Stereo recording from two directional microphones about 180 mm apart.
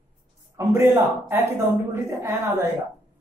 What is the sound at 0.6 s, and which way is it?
Speech, 15° right (ahead or behind).